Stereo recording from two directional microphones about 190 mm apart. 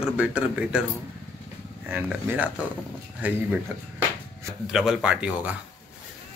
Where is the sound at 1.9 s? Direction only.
10° right (ahead or behind).